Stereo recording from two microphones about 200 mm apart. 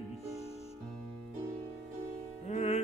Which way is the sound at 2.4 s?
35° left (ahead or behind).